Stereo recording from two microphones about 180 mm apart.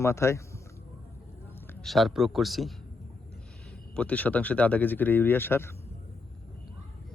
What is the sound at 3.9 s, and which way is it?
Speech, 5° left (ahead or behind).